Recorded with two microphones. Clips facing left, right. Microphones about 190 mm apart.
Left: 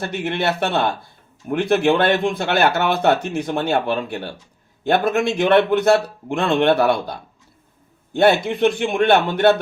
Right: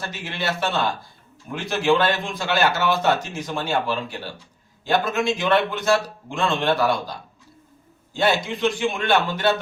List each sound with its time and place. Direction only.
0.0 s speech: 60° left (ahead or behind)